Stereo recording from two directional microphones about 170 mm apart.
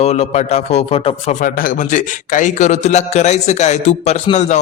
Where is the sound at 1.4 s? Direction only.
50° left (ahead or behind).